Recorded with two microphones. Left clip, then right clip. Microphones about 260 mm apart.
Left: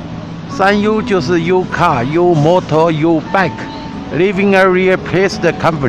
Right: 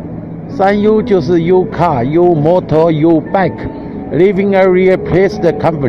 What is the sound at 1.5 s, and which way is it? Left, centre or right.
Speech, left.